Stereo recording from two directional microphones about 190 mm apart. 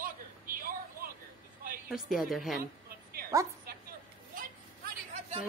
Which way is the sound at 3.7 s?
50° right (ahead or behind).